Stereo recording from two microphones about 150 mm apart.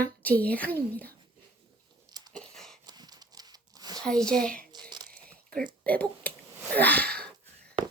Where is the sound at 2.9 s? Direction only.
25° right (ahead or behind).